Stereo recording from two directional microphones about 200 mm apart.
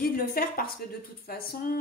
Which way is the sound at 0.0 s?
45° left (ahead or behind).